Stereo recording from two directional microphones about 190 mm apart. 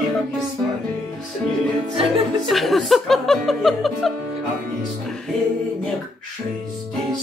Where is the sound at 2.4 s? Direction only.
Centre (ahead or behind).